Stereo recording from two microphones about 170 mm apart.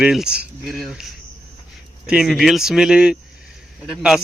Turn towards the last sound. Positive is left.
turn(degrees=-5)  # may be behind; listen again after turning